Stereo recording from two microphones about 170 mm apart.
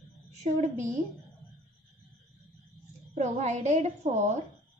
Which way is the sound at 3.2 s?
40° right (ahead or behind).